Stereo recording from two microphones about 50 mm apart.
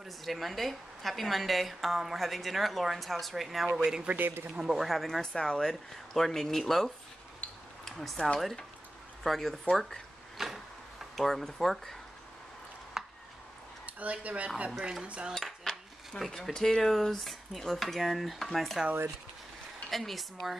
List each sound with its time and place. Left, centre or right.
0.0 s a woman's voice: centre
3.8 s speech: right
4.2 s speech: right
4.6 s speech: centre
4.8 s a woman's voice: centre
5.2 s speech: centre
7.8 s a woman's voice: centre
9.8 s drawer open or close: centre
11.2 s a woman's voice: centre
13.0 s a sound: centre
13.8 s speech: right
14.7 s speech: centre
15.3 s cutlery: centre
19.9 s a woman's voice: centre